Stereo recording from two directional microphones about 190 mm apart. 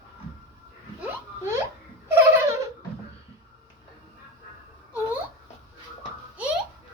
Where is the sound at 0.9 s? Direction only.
10° right (ahead or behind).